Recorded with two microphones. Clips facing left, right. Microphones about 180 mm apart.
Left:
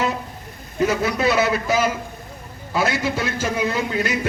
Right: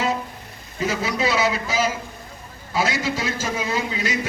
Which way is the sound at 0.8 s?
55° left (ahead or behind).